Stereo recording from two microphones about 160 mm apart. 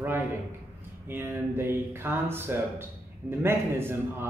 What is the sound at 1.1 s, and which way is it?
Speech, 15° right (ahead or behind).